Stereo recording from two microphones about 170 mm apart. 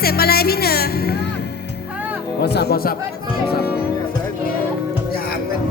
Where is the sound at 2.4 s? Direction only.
70° left (ahead or behind).